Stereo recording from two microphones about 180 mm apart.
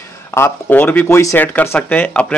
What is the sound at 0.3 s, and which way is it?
Speech, 10° left (ahead or behind).